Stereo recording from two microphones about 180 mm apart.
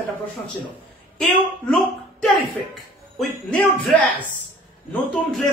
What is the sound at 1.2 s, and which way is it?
Speech, centre (ahead or behind).